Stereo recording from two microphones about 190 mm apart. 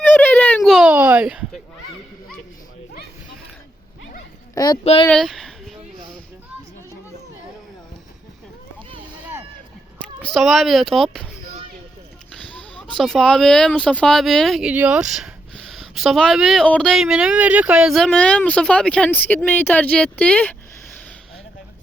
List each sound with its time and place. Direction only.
0.0 s fowl: 10° left (ahead or behind)
4.5 s speech: 20° left (ahead or behind)
4.8 s speech: 35° left (ahead or behind)
5.0 s speech: centre (ahead or behind)
10.2 s speech: 5° left (ahead or behind)
12.3 s speech: 5° left (ahead or behind)